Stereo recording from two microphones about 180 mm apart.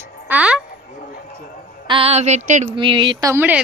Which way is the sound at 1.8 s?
30° right (ahead or behind).